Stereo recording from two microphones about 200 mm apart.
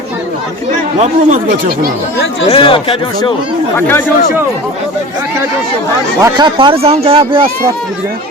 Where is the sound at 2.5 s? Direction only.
25° left (ahead or behind).